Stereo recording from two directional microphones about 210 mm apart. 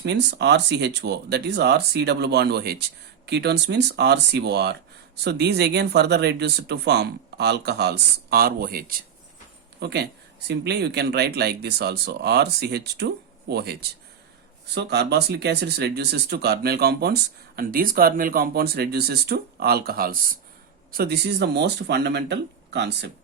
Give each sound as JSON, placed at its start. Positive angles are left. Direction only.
{"t": 0.0, "sound": "speech", "side_deg": -55}
{"t": 14.8, "sound": "speech", "side_deg": -50}